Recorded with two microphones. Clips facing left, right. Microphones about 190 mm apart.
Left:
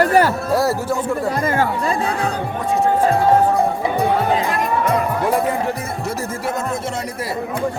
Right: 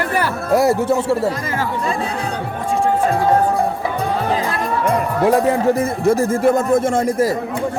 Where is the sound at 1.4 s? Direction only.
55° left (ahead or behind).